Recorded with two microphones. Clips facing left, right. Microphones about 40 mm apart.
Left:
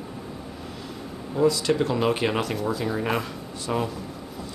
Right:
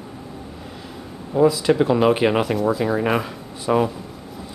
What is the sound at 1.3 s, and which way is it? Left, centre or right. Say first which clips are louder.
Speech: right 5 dB; centre.